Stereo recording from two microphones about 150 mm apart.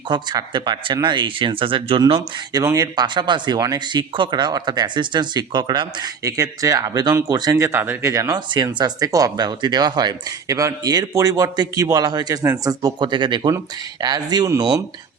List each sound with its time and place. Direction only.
0.1 s speech: 30° right (ahead or behind)